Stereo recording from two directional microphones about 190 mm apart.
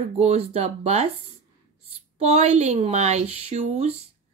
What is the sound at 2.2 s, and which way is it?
A woman's voice, 35° right (ahead or behind).